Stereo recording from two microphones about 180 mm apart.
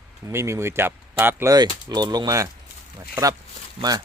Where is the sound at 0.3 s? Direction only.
15° right (ahead or behind).